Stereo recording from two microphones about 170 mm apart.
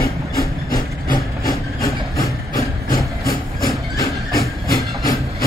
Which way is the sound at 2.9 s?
55° left (ahead or behind).